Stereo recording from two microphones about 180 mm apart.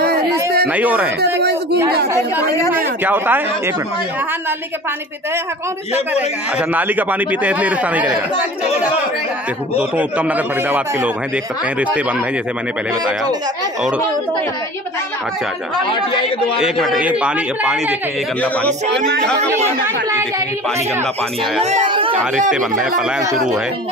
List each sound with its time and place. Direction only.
0.0 s a sound: 60° right (ahead or behind)
0.7 s a man's voice: 10° right (ahead or behind)
1.4 s a sound: 65° right (ahead or behind)
2.7 s a man's voice: 10° right (ahead or behind)
6.7 s a man's voice: 10° right (ahead or behind)
9.8 s a man's voice: 10° right (ahead or behind)
16.1 s a man's voice: 30° left (ahead or behind)
16.6 s a man's voice: centre (ahead or behind)
18.4 s speech: 5° left (ahead or behind)
20.1 s speech: 20° right (ahead or behind)
21.6 s a sound: 30° right (ahead or behind)
22.5 s a man's voice: 5° right (ahead or behind)